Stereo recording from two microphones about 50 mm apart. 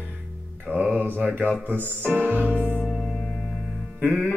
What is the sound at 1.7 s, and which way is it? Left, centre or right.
Speech, right.